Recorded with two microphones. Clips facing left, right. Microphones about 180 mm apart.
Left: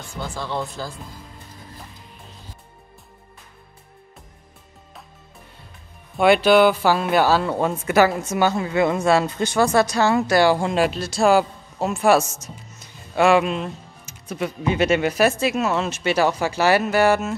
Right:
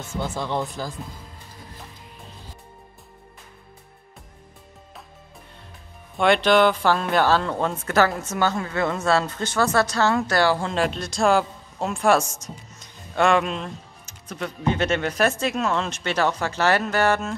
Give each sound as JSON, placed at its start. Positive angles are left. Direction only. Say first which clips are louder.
{"t": 0.0, "sound": "speech", "louder": "right 2 dB", "side_deg": -20}
{"t": 6.1, "sound": "speech", "louder": "left 3 dB", "side_deg": 5}